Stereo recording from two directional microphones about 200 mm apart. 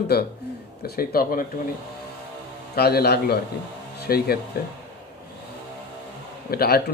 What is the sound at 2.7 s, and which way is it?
A man's voice, 50° left (ahead or behind).